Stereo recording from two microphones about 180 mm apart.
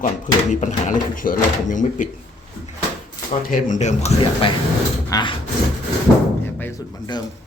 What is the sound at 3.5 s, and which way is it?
Speech, 45° left (ahead or behind).